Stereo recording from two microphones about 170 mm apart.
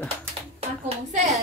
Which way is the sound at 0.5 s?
40° right (ahead or behind).